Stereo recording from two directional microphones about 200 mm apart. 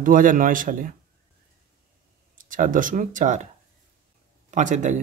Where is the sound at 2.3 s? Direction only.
40° right (ahead or behind).